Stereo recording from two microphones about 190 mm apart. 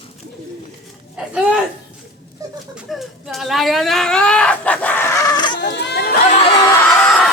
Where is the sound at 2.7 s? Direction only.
Centre (ahead or behind); by 5.5 s 20° left (ahead or behind).